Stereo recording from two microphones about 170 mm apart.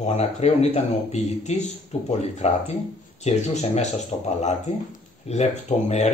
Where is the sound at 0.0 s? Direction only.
40° left (ahead or behind).